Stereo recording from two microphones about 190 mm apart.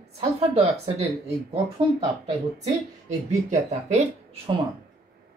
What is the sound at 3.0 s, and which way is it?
Speech, 35° right (ahead or behind).